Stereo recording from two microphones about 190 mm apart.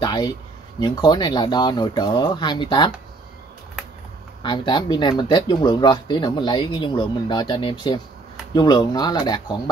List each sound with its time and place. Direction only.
0.0 s a sound: 20° left (ahead or behind)
0.7 s speech: 20° left (ahead or behind)
4.4 s speech: 25° left (ahead or behind)